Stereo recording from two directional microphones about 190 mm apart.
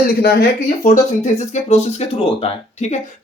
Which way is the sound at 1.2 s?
40° left (ahead or behind).